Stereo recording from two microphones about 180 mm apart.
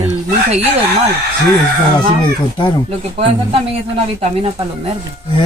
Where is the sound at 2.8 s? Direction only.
35° right (ahead or behind).